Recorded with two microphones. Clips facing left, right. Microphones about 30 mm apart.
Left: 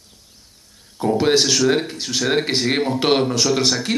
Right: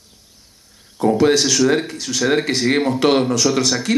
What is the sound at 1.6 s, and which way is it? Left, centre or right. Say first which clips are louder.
Speech: right 2 dB; centre.